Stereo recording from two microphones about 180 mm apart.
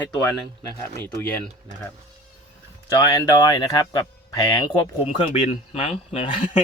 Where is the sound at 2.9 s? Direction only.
20° left (ahead or behind).